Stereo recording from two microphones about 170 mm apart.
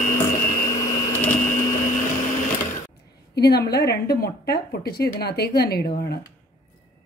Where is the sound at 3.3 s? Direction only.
70° left (ahead or behind).